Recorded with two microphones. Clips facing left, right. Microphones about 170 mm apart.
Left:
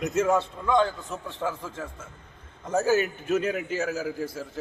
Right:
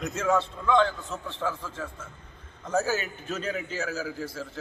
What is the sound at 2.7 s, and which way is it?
A man's voice, 20° left (ahead or behind).